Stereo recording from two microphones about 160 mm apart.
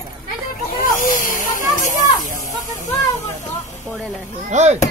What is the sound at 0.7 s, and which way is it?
Snake, 60° left (ahead or behind).